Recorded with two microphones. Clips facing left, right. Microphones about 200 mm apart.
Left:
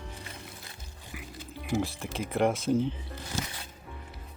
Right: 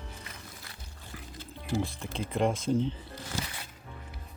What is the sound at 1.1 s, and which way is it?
Music, 15° left (ahead or behind).